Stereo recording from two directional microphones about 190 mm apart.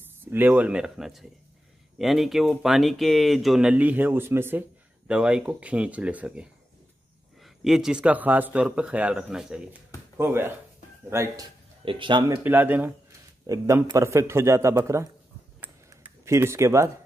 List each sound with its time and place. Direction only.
0.0 s a man's voice: 10° right (ahead or behind)
11.8 s speech: 25° right (ahead or behind)
12.4 s a man's voice: 10° right (ahead or behind)
15.6 s tick-tock: 10° right (ahead or behind)